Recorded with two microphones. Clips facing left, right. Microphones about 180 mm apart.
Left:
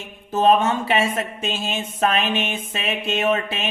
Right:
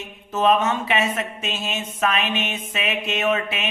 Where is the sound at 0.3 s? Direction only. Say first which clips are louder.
Left 2 dB; 35° left (ahead or behind).